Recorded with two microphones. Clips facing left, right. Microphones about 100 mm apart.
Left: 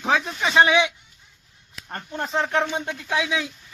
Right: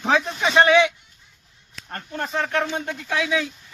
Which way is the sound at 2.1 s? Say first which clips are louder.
Left 1 dB; 15° left (ahead or behind).